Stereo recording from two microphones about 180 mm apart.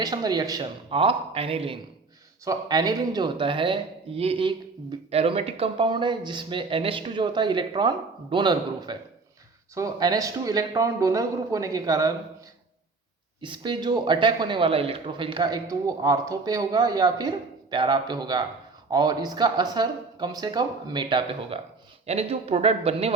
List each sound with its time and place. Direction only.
0.0 s speech: 20° right (ahead or behind)
2.4 s speech: 20° right (ahead or behind)
13.4 s speech: 25° right (ahead or behind)